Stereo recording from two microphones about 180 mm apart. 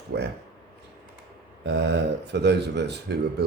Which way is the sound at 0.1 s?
70° right (ahead or behind).